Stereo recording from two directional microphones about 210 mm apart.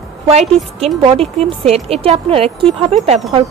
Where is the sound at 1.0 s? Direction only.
25° right (ahead or behind).